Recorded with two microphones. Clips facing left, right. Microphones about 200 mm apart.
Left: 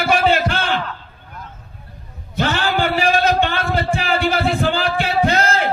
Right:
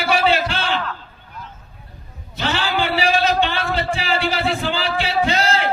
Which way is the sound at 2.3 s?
50° left (ahead or behind).